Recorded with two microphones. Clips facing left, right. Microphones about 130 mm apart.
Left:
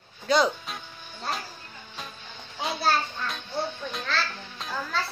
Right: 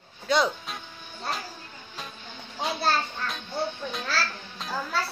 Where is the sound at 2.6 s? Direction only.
Centre (ahead or behind).